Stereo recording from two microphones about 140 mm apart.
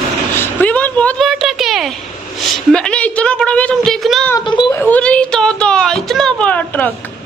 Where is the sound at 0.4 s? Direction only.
10° left (ahead or behind).